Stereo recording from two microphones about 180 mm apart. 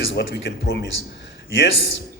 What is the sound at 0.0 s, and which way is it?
A man's voice, 80° left.